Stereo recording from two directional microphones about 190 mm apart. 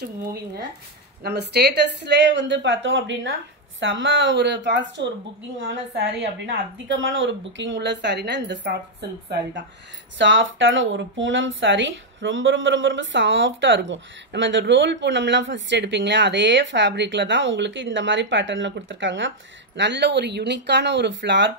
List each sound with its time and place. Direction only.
0.0 s speech: 55° right (ahead or behind)
10.1 s speech: 75° right (ahead or behind)